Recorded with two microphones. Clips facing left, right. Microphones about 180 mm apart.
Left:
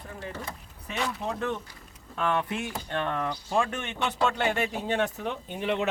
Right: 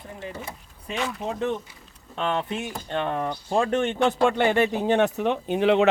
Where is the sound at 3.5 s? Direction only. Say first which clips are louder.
Right 7 dB; 40° right (ahead or behind).